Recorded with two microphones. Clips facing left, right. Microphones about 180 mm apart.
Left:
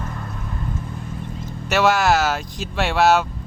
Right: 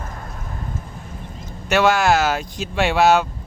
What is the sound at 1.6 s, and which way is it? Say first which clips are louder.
Speech: right 1 dB; 5° left (ahead or behind).